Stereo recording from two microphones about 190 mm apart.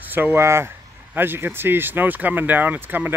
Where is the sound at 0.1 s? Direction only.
10° right (ahead or behind).